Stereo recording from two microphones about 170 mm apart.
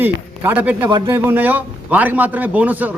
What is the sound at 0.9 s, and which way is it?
Speech, 30° right (ahead or behind).